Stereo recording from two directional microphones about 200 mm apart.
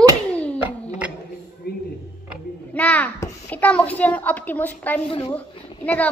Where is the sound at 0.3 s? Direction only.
5° left (ahead or behind).